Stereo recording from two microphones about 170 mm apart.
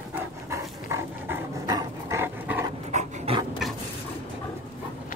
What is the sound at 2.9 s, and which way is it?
Dog, 45° right (ahead or behind).